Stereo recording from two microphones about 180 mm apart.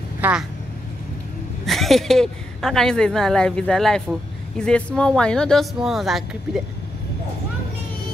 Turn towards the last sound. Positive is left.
turn(degrees=0)  # may be behind; listen again after turning